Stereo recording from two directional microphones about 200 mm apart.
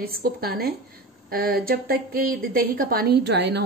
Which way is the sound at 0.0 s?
50° right (ahead or behind).